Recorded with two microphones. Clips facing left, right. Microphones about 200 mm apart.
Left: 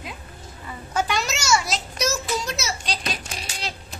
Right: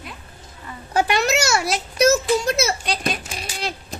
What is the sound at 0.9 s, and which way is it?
A child's voice, 60° right (ahead or behind).